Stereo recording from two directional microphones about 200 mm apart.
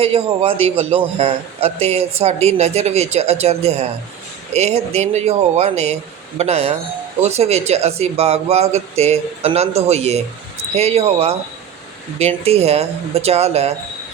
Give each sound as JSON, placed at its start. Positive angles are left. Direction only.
{"t": 0.0, "sound": "a man's voice", "side_deg": -30}